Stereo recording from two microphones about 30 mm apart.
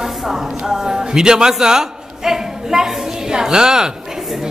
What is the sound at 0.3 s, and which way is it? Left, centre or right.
A man's voice, centre.